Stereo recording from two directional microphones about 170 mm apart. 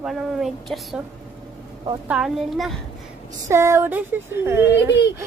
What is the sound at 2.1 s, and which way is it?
Speech, 5° right (ahead or behind).